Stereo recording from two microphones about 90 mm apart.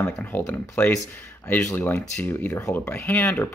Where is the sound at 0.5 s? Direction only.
20° left (ahead or behind).